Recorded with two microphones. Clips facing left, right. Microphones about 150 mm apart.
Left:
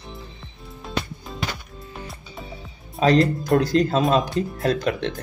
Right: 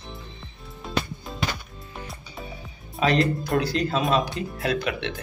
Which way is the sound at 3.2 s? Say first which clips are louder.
Left 4 dB; centre (ahead or behind).